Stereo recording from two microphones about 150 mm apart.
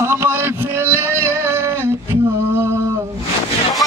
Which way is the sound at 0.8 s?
15° right (ahead or behind).